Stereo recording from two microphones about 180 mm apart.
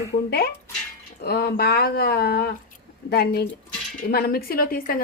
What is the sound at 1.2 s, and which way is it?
A woman's voice, 60° left (ahead or behind).